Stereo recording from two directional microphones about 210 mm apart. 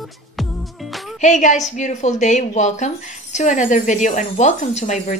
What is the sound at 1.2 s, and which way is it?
A woman's voice, 35° left (ahead or behind).